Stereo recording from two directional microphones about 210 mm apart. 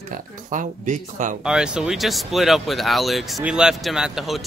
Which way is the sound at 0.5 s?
35° right (ahead or behind).